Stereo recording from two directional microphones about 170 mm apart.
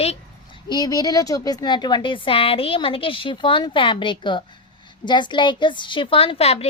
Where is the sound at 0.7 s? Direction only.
20° left (ahead or behind).